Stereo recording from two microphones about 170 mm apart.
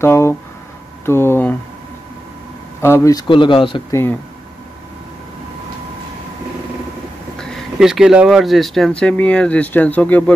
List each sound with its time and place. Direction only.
0.0 s speech: 15° left (ahead or behind)
2.8 s speech: 15° left (ahead or behind)
7.3 s speech: 5° left (ahead or behind)